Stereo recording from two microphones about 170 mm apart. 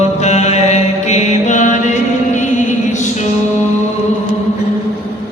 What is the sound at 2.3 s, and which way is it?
Music, 45° left (ahead or behind).